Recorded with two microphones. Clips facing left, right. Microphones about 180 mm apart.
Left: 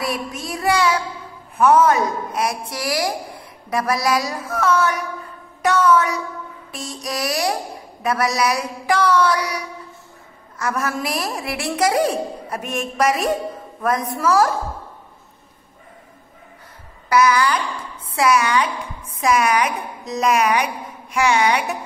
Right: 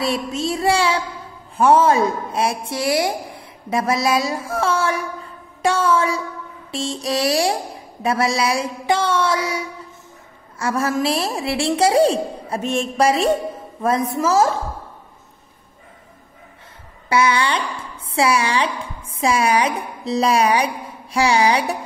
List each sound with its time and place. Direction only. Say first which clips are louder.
0.0 s a woman's voice: right 4 dB; 25° right (ahead or behind)
17.1 s a woman's voice: left 2 dB; 25° right (ahead or behind)